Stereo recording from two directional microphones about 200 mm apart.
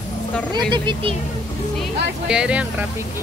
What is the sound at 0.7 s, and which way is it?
Speech, 25° right (ahead or behind).